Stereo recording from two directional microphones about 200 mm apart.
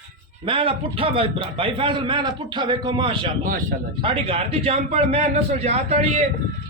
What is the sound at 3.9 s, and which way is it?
A man's voice, 25° right (ahead or behind).